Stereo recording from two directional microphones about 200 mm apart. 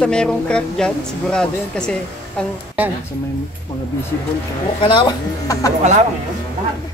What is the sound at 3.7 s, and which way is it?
Speech, 20° left (ahead or behind).